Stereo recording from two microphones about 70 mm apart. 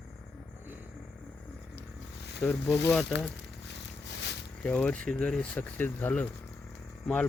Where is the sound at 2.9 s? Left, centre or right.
Centre.